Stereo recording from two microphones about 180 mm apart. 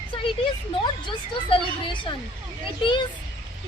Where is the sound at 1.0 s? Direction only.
25° left (ahead or behind).